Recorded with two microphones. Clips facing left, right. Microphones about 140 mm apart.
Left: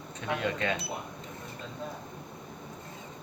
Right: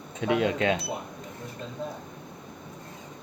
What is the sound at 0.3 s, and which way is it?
Speech, 90° right.